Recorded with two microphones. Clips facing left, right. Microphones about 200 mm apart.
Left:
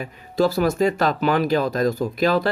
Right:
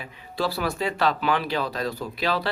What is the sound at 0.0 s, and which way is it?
Speech, 45° left (ahead or behind).